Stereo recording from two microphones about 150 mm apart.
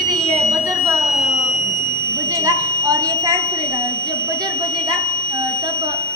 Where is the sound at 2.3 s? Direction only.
20° right (ahead or behind).